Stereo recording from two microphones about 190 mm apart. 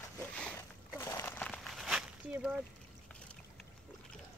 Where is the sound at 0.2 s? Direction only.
5° left (ahead or behind).